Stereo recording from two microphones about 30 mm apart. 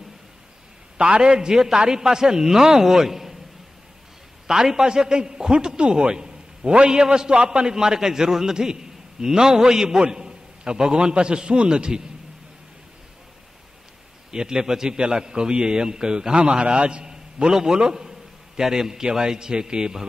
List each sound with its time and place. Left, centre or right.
0.9 s a man's voice: right; by 3.3 s centre
4.5 s a man's voice: centre
14.3 s a man's voice: right
16.6 s a man's voice: right